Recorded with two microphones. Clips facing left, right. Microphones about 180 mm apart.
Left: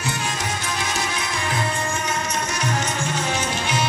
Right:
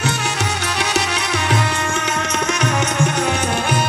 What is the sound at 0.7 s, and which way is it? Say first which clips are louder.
Music: right 8 dB; 75° right (ahead or behind).